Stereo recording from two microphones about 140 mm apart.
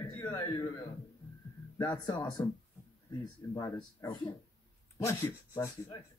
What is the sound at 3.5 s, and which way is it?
Speech, 25° left (ahead or behind).